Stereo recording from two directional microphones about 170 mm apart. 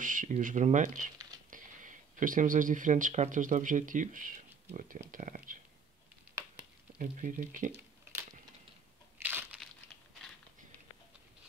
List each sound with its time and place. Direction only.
0.0 s speech: 50° right (ahead or behind)
7.0 s speech: 50° right (ahead or behind)
9.2 s crumpling: 10° right (ahead or behind)